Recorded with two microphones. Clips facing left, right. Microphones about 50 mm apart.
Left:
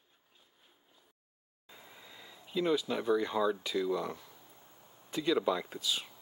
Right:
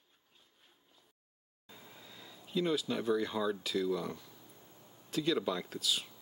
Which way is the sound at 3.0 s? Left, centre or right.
Centre.